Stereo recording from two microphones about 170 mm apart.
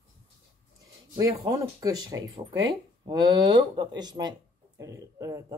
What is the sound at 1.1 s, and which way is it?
Speech, 20° right (ahead or behind).